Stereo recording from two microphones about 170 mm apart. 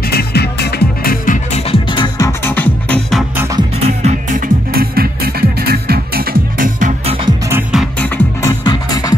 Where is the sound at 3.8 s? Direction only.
40° right (ahead or behind).